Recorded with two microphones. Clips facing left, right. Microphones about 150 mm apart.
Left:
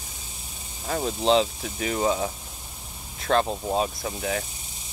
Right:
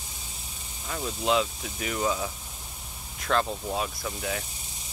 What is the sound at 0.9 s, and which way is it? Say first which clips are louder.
Speech: left 6 dB; 45° left (ahead or behind).